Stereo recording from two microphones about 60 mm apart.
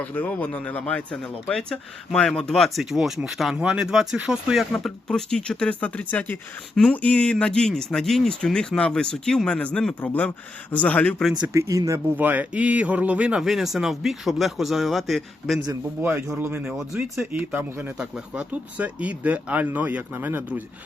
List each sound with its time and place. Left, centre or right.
0.0 s speech: left; by 3.5 s centre
3.5 s speech: centre
4.7 s speech: centre
10.0 s speech: left
11.5 s speech: right
12.1 s speech: right
13.4 s speech: centre
16.0 s speech: right
17.9 s speech: centre; by 20.7 s right